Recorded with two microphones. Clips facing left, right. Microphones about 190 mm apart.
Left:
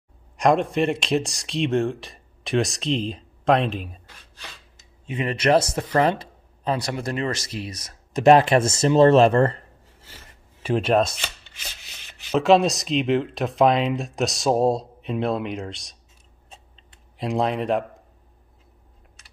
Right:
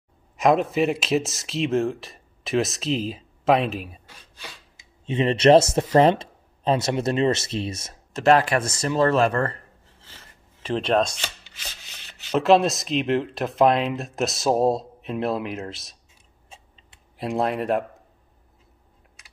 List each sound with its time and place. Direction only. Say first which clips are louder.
0.4 s speech: even; 5° right (ahead or behind)
5.0 s speech: right 5 dB; 25° right (ahead or behind)
8.1 s speech: left 3 dB; 20° left (ahead or behind)
10.0 s chopping: left 2 dB; 10° left (ahead or behind)
12.3 s speech: left 1 dB; centre (ahead or behind)
17.2 s speech: left 1 dB; 5° right (ahead or behind)